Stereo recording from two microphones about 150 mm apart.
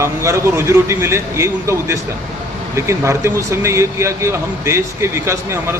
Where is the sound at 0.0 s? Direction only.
20° right (ahead or behind).